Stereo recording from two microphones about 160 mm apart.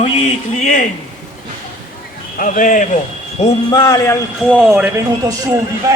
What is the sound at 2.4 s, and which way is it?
Speech, 55° left (ahead or behind).